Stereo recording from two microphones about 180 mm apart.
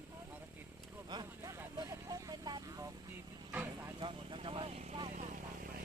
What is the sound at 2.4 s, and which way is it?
Vehicle, 20° right (ahead or behind).